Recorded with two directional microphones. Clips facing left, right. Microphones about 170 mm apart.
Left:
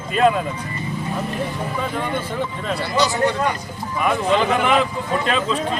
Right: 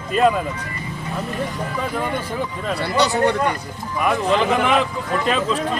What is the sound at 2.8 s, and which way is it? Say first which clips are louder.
Speech: right 2 dB; 60° right (ahead or behind).